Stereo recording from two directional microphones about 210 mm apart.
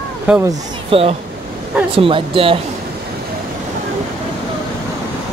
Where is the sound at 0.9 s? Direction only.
25° right (ahead or behind).